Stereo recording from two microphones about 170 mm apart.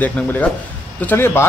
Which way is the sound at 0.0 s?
10° left (ahead or behind).